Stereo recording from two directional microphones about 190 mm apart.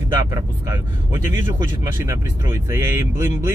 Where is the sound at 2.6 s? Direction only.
15° right (ahead or behind).